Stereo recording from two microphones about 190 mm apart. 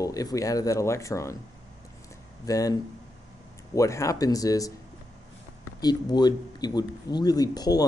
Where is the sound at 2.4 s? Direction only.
20° left (ahead or behind).